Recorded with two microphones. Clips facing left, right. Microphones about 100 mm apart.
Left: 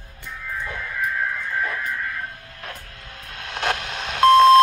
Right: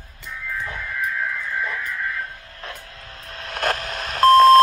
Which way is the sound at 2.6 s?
35° right (ahead or behind).